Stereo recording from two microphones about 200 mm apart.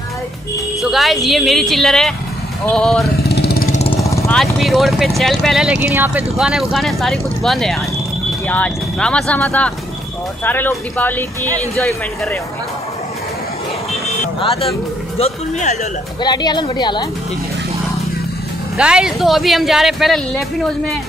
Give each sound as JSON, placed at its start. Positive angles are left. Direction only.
{"t": 0.9, "sound": "speech", "side_deg": 0}
{"t": 3.3, "sound": "vehicle", "side_deg": 55}
{"t": 4.0, "sound": "vehicle", "side_deg": 15}
{"t": 4.4, "sound": "speech", "side_deg": 0}
{"t": 14.4, "sound": "a woman's voice", "side_deg": 30}
{"t": 16.2, "sound": "a woman's voice", "side_deg": 20}
{"t": 18.8, "sound": "speech", "side_deg": -5}